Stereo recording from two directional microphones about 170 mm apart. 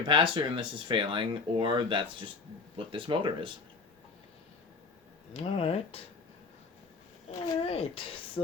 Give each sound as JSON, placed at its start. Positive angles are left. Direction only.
{"t": 0.1, "sound": "speech", "side_deg": -30}
{"t": 5.3, "sound": "speech", "side_deg": 35}
{"t": 7.3, "sound": "speech", "side_deg": 35}